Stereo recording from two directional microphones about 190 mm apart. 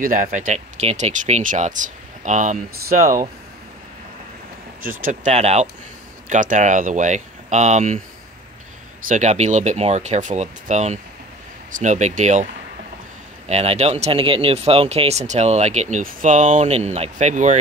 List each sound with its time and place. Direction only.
0.0 s speech: 45° right (ahead or behind)
5.0 s speech: 35° right (ahead or behind)
9.0 s speech: 40° right (ahead or behind)
13.5 s speech: 35° right (ahead or behind)